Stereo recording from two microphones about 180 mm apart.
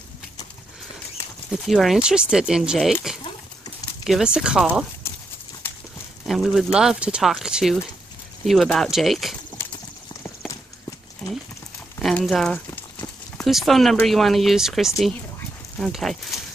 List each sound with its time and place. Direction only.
1.5 s speech: centre (ahead or behind)
6.2 s speech: centre (ahead or behind)
12.0 s speech: centre (ahead or behind)